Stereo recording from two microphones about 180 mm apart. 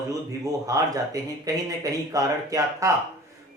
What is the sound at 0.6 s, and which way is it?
Speech, 20° right (ahead or behind).